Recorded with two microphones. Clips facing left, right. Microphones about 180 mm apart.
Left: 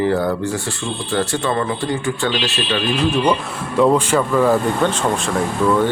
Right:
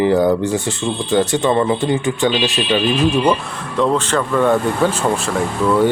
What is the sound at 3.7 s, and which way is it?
Speech, 10° left (ahead or behind).